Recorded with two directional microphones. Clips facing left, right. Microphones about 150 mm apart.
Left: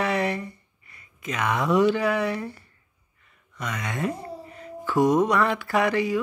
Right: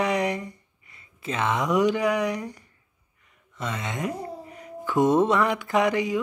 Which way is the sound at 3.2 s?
20° right (ahead or behind).